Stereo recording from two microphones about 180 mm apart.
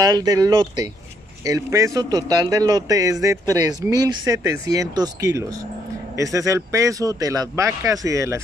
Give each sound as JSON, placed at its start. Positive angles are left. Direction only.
{"t": 0.0, "sound": "a man's voice", "side_deg": -20}